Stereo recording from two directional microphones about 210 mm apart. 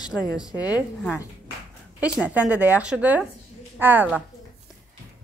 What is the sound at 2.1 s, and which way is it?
A woman's voice, 5° right (ahead or behind).